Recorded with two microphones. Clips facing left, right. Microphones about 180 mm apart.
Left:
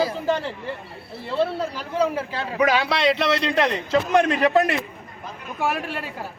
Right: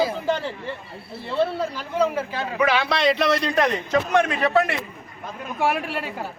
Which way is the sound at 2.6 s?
40° left (ahead or behind).